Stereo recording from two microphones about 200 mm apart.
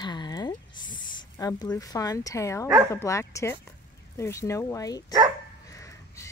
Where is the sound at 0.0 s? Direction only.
20° left (ahead or behind).